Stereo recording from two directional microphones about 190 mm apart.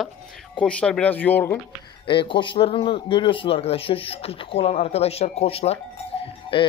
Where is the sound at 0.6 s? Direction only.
5° left (ahead or behind).